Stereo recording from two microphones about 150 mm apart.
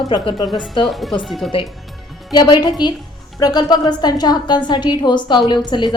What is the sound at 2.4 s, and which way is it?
A woman's voice, 30° left (ahead or behind).